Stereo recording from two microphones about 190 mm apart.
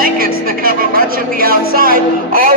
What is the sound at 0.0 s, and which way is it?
A man's voice, 50° right (ahead or behind).